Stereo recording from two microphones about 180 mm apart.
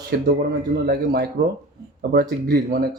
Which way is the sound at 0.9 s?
60° right (ahead or behind).